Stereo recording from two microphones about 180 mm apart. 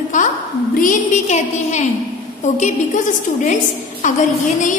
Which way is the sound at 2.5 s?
40° left (ahead or behind).